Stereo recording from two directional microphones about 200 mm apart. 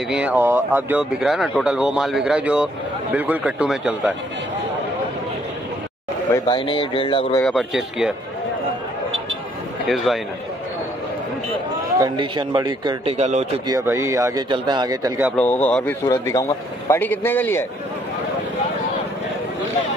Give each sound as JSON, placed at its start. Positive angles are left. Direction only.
{"t": 0.1, "sound": "speech", "side_deg": -5}
{"t": 6.3, "sound": "speech", "side_deg": 20}
{"t": 7.4, "sound": "speech", "side_deg": 0}
{"t": 9.8, "sound": "speech", "side_deg": 0}
{"t": 12.0, "sound": "a man's voice", "side_deg": -20}
{"t": 13.2, "sound": "speech", "side_deg": -35}
{"t": 13.7, "sound": "speech", "side_deg": -15}
{"t": 15.3, "sound": "speech", "side_deg": 10}